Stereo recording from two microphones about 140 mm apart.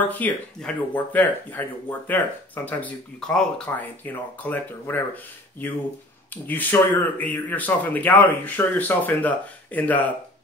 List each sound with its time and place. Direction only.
0.2 s speech: 10° left (ahead or behind)